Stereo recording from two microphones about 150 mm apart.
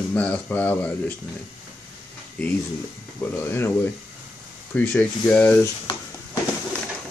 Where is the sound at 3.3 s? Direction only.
15° left (ahead or behind).